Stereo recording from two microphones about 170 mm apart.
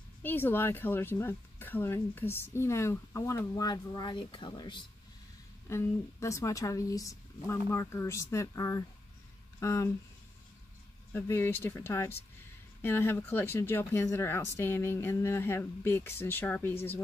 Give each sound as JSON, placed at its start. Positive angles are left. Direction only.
{"t": 0.2, "sound": "speech", "side_deg": 10}
{"t": 5.7, "sound": "speech", "side_deg": 15}
{"t": 11.1, "sound": "speech", "side_deg": 15}